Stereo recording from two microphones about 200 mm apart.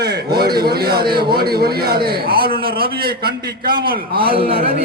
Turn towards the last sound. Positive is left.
turn(degrees=-50)  # may be behind; listen again after turning